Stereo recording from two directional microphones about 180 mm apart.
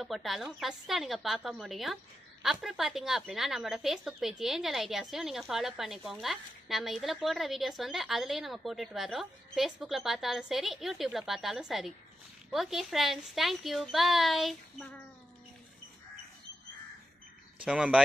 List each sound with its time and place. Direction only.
0.0 s a woman's voice: centre (ahead or behind)
17.6 s a woman's voice: 5° right (ahead or behind)